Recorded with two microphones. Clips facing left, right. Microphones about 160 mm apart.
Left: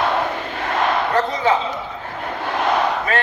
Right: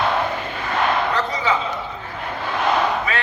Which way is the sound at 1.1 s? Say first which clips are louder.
Left 4 dB; 50° left (ahead or behind).